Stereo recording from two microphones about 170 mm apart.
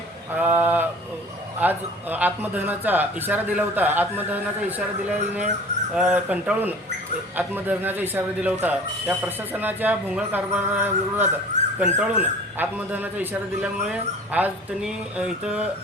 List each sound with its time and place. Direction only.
0.3 s speech: 10° right (ahead or behind)
5.9 s speech: 5° right (ahead or behind)
11.6 s dog: 45° right (ahead or behind)
11.9 s speech: 5° right (ahead or behind)